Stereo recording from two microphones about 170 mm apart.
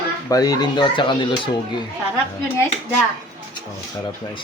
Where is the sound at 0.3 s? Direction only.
20° left (ahead or behind).